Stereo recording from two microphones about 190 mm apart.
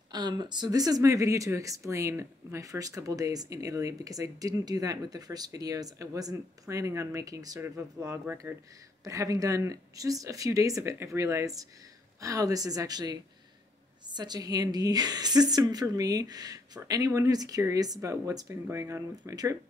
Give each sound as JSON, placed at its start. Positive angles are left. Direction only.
{"t": 0.1, "sound": "a woman's voice", "side_deg": -20}